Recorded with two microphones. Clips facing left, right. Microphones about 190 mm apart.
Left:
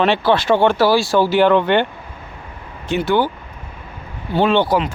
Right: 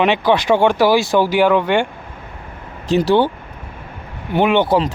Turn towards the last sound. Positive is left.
turn(degrees=-15)  # may be behind; listen again after turning